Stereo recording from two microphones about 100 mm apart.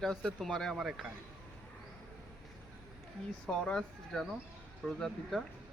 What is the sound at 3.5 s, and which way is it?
Speech, 5° left (ahead or behind).